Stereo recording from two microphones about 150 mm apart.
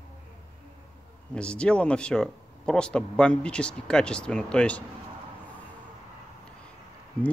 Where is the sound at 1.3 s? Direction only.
5° left (ahead or behind).